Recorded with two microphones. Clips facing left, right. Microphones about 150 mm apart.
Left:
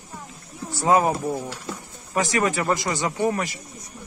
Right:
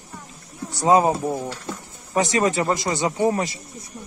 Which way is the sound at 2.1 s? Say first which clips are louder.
Right 3 dB; 25° right (ahead or behind).